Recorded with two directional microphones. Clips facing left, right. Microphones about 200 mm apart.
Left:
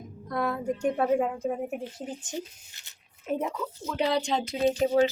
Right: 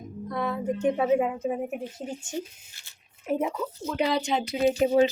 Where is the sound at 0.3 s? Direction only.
Centre (ahead or behind).